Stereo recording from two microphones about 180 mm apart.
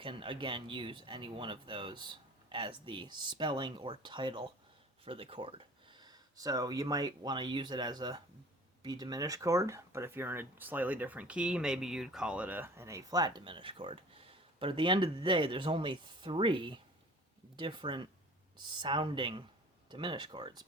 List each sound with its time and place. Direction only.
0.0 s speech: 30° right (ahead or behind)